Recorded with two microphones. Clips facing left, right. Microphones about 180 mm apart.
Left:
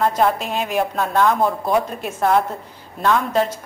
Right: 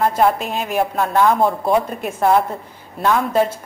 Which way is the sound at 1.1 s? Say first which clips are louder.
Right 2 dB; 15° right (ahead or behind).